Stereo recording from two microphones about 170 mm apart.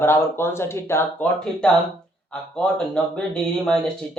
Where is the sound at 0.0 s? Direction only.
15° left (ahead or behind).